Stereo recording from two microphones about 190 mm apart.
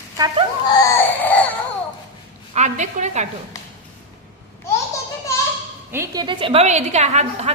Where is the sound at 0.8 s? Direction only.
10° left (ahead or behind).